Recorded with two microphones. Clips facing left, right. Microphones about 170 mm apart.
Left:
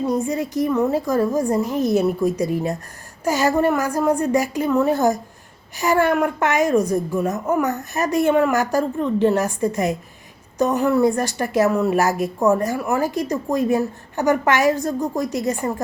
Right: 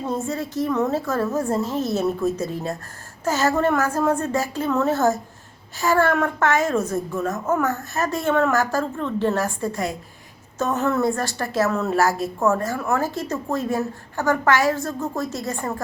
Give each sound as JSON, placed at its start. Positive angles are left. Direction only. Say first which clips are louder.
{"t": 0.3, "sound": "a woman's voice", "louder": "left 3 dB", "side_deg": 15}